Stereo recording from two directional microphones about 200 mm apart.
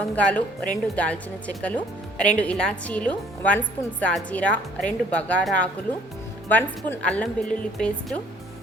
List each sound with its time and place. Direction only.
0.2 s a woman's voice: 5° left (ahead or behind)